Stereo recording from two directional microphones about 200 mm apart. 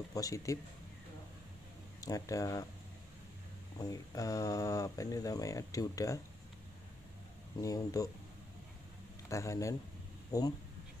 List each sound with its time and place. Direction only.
0.1 s speech: 15° left (ahead or behind)
2.0 s speech: 15° left (ahead or behind)
3.7 s speech: 15° left (ahead or behind)
7.6 s speech: 15° left (ahead or behind)
9.3 s speech: 15° left (ahead or behind)